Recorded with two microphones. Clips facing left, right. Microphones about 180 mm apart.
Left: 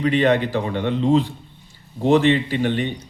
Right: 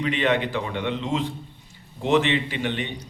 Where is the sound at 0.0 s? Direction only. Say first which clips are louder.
Left 5 dB; 40° left (ahead or behind).